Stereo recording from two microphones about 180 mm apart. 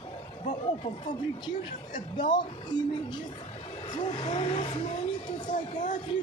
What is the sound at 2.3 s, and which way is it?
Speech, 25° left (ahead or behind).